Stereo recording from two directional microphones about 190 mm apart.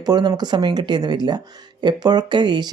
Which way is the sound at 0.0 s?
20° right (ahead or behind).